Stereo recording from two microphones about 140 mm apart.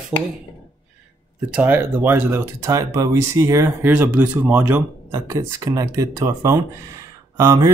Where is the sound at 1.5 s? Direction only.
10° right (ahead or behind).